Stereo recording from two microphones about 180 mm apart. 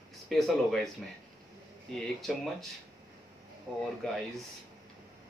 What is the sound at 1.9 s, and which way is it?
Speech, centre (ahead or behind).